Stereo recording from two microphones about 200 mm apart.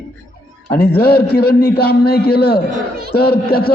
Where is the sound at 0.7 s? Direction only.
50° left (ahead or behind).